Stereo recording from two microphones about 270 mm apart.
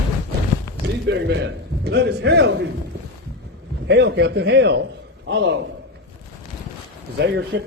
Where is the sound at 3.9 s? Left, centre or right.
Right.